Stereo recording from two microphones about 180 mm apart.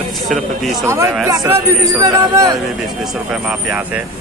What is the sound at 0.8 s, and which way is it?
A man's voice, 15° right (ahead or behind).